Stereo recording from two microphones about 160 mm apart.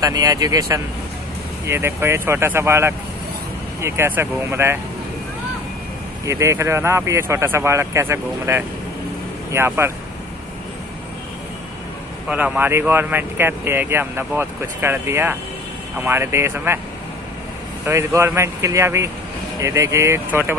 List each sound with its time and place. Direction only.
0.0 s speech: 20° right (ahead or behind)
6.2 s speech: 20° right (ahead or behind)
12.3 s speech: 10° right (ahead or behind)
17.8 s speech: 15° right (ahead or behind)